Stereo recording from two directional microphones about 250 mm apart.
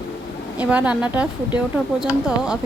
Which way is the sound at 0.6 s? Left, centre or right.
Centre.